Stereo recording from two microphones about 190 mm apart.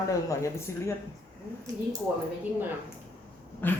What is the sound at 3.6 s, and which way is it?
Speech, 10° left (ahead or behind).